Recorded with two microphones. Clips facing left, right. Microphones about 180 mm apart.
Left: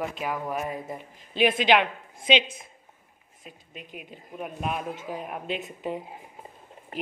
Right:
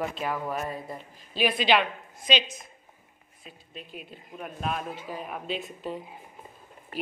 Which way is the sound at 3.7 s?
10° left (ahead or behind).